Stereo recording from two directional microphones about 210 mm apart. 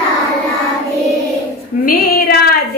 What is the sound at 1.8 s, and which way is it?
Female singing, 45° left (ahead or behind).